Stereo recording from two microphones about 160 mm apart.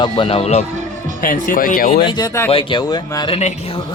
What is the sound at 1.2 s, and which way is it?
Speech, 60° left (ahead or behind).